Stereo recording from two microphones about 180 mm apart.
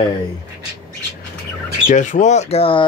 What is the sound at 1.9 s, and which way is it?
Speech, 45° left (ahead or behind).